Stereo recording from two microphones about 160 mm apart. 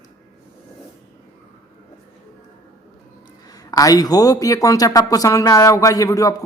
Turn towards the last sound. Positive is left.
turn(degrees=20)  # may be behind; listen again after turning